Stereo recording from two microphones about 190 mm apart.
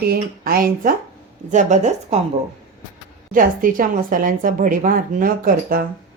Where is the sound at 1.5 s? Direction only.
40° right (ahead or behind).